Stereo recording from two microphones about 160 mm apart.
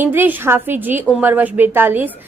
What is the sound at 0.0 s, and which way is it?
A woman's voice, 15° right (ahead or behind).